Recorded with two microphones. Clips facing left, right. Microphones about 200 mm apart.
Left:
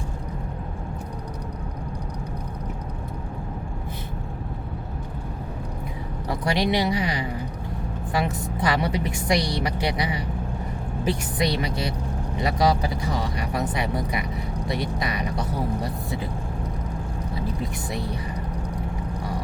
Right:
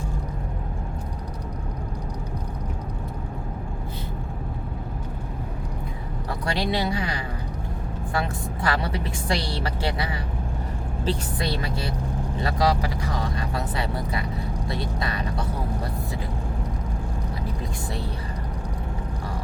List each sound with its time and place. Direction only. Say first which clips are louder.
6.4 s a woman's voice: left 3 dB; 20° left (ahead or behind)